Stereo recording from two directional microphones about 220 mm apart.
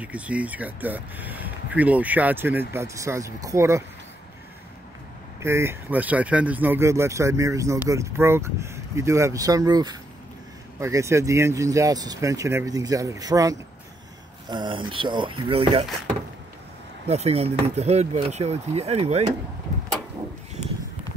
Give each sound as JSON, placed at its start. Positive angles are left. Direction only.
{"t": 0.0, "sound": "speech", "side_deg": -5}
{"t": 5.4, "sound": "speech", "side_deg": -10}
{"t": 17.1, "sound": "speech", "side_deg": -30}